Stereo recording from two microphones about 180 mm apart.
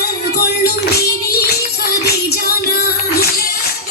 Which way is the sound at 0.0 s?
60° left (ahead or behind).